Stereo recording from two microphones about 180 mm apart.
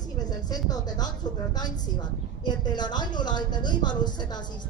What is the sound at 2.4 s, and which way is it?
A woman's voice, 25° left (ahead or behind).